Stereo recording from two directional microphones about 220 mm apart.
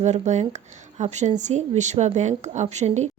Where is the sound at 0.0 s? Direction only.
30° right (ahead or behind).